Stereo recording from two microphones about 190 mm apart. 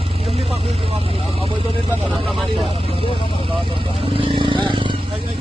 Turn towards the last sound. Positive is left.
turn(degrees=-25)  # may be behind; listen again after turning